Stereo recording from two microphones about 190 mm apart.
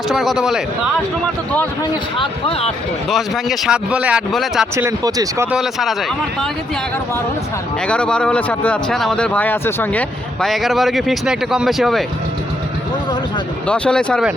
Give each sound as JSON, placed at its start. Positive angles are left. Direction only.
{"t": 0.1, "sound": "speech", "side_deg": 0}
{"t": 2.1, "sound": "speech", "side_deg": 30}
{"t": 3.1, "sound": "speech", "side_deg": 0}
{"t": 4.9, "sound": "speech", "side_deg": -20}
{"t": 5.5, "sound": "speech", "side_deg": 0}
{"t": 7.9, "sound": "speech", "side_deg": 5}
{"t": 13.7, "sound": "speech", "side_deg": 5}